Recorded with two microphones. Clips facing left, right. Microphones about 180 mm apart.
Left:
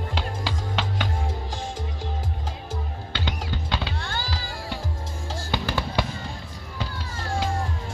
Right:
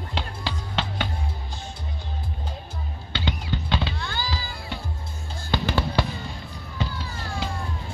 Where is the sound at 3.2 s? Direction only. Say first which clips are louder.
Right 3 dB; 10° left (ahead or behind).